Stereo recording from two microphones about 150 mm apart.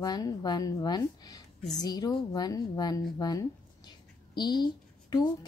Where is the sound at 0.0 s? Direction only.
25° left (ahead or behind).